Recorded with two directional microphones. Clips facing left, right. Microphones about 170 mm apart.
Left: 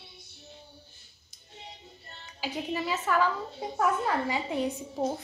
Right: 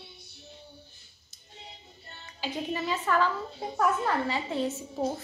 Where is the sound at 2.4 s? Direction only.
10° left (ahead or behind).